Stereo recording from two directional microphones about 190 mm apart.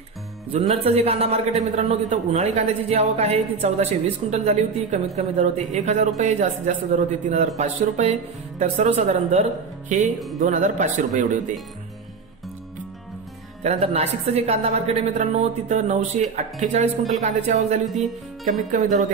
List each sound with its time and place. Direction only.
0.8 s a man's voice: 35° right (ahead or behind)
13.6 s a man's voice: 35° right (ahead or behind)